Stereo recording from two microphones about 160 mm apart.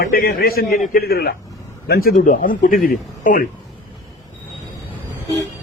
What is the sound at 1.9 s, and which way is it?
Speech, 70° left (ahead or behind).